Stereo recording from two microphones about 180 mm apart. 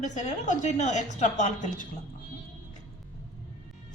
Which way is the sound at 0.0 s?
45° left (ahead or behind).